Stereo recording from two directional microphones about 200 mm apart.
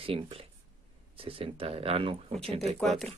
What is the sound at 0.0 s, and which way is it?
Speech, 30° right (ahead or behind).